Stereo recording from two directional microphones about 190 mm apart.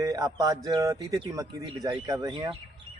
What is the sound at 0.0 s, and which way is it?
A man's voice, 20° right (ahead or behind).